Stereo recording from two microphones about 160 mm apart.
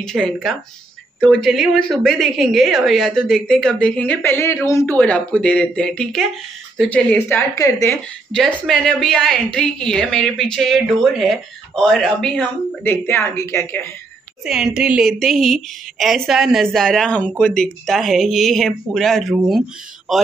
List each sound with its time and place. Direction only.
0.0 s a woman's voice: 5° left (ahead or behind)
8.4 s a woman's voice: centre (ahead or behind)
13.0 s a woman's voice: 15° left (ahead or behind)
14.4 s a woman's voice: 5° right (ahead or behind)